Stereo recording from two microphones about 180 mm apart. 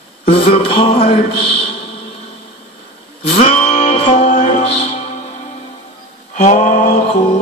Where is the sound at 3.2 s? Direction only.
35° left (ahead or behind).